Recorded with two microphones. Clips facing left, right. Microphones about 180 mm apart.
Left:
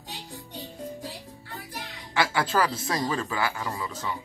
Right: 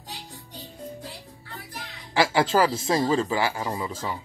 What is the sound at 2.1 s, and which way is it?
Speech, 25° right (ahead or behind).